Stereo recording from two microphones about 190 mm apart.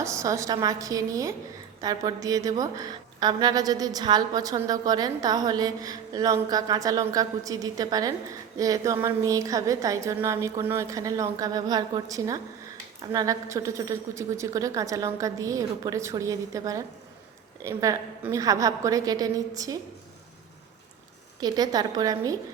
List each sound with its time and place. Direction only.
0.0 s a woman's voice: 15° right (ahead or behind)
21.4 s a woman's voice: 20° right (ahead or behind)